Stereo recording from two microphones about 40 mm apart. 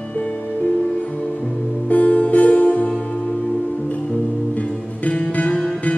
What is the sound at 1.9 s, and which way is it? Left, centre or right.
Music, left.